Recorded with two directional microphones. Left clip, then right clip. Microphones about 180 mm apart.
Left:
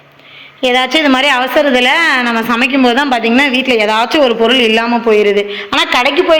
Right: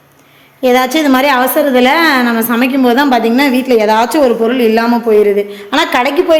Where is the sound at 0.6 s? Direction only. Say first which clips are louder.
Right 1 dB; 20° right (ahead or behind).